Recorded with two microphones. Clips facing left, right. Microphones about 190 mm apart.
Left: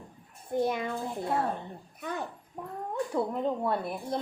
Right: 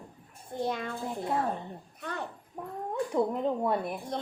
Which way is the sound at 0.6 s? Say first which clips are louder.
Left 2 dB; 15° left (ahead or behind).